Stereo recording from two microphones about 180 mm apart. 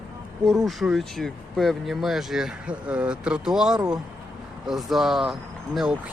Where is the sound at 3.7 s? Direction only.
20° right (ahead or behind).